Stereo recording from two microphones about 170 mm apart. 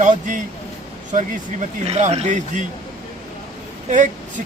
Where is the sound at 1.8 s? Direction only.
40° right (ahead or behind).